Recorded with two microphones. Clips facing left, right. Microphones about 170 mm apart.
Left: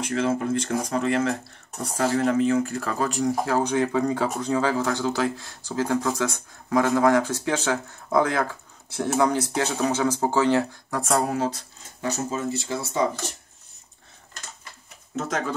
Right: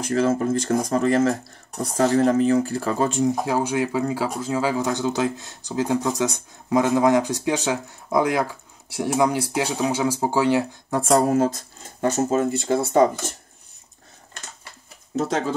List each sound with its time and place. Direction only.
0.0 s speech: 40° right (ahead or behind); by 10.7 s 10° right (ahead or behind)
10.9 s speech: 30° right (ahead or behind)
11.2 s speech: 45° right (ahead or behind)
15.1 s speech: 30° right (ahead or behind)